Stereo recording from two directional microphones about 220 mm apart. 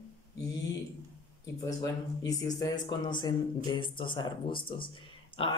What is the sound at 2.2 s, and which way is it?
Speech, 15° left (ahead or behind).